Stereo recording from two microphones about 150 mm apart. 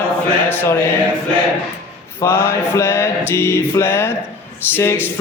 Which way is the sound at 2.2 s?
20° left (ahead or behind).